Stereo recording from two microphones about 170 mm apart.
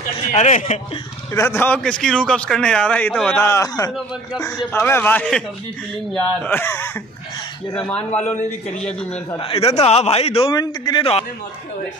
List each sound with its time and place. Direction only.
0.3 s a man's voice: 45° left (ahead or behind)
1.3 s a man's voice: 15° left (ahead or behind)
9.4 s a man's voice: 35° left (ahead or behind)